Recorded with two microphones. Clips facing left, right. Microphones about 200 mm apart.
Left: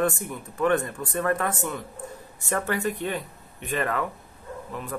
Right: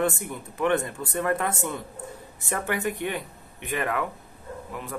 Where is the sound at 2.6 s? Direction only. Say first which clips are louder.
Right 2 dB; 15° right (ahead or behind).